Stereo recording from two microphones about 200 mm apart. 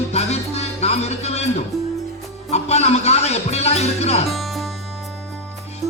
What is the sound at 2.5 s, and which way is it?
A man's voice, 30° left (ahead or behind).